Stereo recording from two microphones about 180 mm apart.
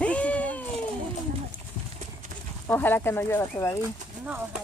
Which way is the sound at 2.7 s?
10° left (ahead or behind).